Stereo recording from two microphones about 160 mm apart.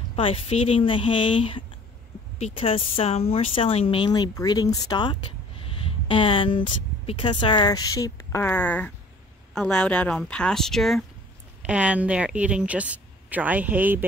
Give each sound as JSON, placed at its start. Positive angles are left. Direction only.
{"t": 0.1, "sound": "speech", "side_deg": 35}